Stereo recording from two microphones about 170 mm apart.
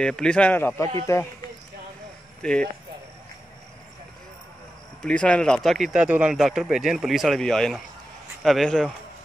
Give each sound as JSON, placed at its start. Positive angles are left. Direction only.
{"t": 0.0, "sound": "a man's voice", "side_deg": 5}
{"t": 2.4, "sound": "speech", "side_deg": 5}
{"t": 5.0, "sound": "speech", "side_deg": 5}